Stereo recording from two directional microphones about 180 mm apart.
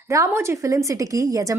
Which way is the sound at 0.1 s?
15° right (ahead or behind).